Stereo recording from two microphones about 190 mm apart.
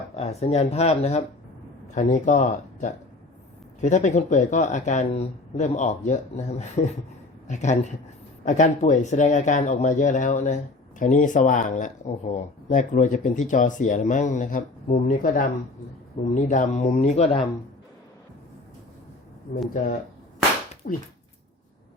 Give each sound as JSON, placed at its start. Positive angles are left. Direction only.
{"t": 0.2, "sound": "speech", "side_deg": 35}
{"t": 20.8, "sound": "speech", "side_deg": 45}